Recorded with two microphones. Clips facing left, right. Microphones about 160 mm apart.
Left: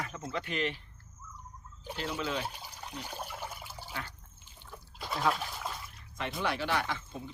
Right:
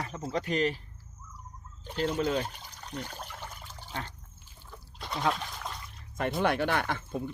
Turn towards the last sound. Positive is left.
turn(degrees=-55)  # may be behind; listen again after turning